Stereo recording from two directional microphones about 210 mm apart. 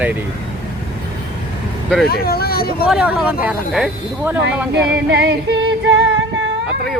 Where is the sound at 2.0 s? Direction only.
45° left (ahead or behind).